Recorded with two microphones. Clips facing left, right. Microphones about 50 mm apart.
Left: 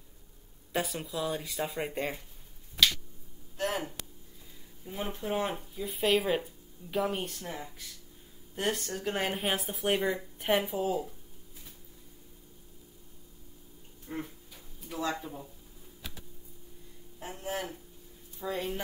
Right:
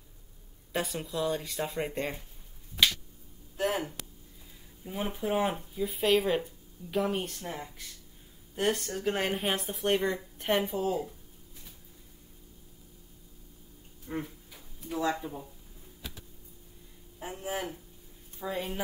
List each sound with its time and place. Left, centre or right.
0.7 s speech: centre
2.8 s finger snapping: right
3.5 s a sound: centre
4.8 s speech: centre
14.0 s a sound: centre
14.9 s speech: centre
15.1 s speech: centre
17.2 s speech: centre